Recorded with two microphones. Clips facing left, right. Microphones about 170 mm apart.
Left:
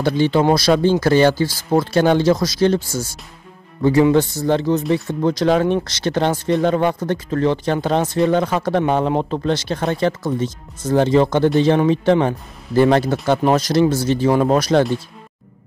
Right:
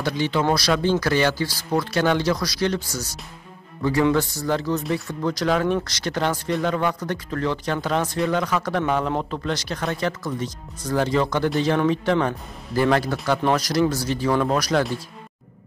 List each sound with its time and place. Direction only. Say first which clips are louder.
0.0 s speech: left 7 dB; 30° left (ahead or behind)
4.1 s speech: left 6 dB; 25° left (ahead or behind)